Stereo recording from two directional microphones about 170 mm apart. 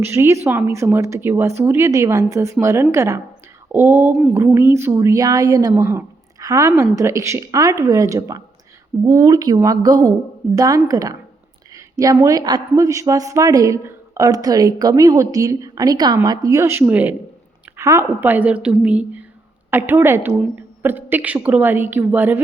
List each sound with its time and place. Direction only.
0.0 s a woman's voice: 15° right (ahead or behind)